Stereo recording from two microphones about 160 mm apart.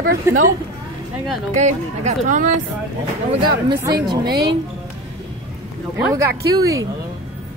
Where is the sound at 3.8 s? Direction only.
25° right (ahead or behind).